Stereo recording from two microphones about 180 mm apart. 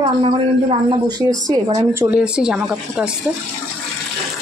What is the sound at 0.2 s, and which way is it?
A man's voice, 30° right (ahead or behind).